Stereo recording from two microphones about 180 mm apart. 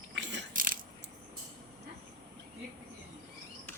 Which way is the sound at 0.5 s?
50° right (ahead or behind).